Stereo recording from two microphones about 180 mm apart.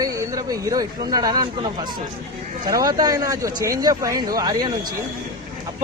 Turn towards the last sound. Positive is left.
turn(degrees=-20)  # may be behind; listen again after turning